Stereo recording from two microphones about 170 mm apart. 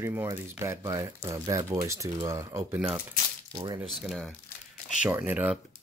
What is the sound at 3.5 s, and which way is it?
Speech, 25° right (ahead or behind).